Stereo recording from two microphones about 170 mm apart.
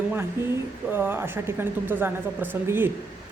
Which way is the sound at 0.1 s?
15° right (ahead or behind).